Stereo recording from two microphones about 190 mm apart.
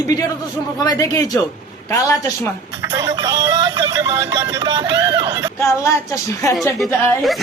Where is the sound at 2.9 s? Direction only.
15° right (ahead or behind).